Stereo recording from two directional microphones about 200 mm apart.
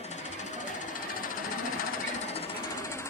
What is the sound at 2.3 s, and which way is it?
Jackhammer, 30° left (ahead or behind).